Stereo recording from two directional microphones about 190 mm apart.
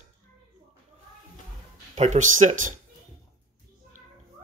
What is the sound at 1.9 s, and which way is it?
Speech, 40° right (ahead or behind).